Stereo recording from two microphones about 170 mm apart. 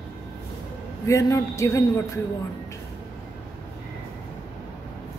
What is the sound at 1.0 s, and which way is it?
Speech, 20° left (ahead or behind).